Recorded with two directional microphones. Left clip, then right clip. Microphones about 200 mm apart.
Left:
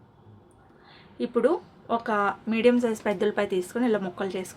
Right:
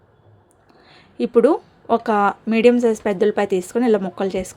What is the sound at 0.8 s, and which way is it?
Speech, 35° right (ahead or behind).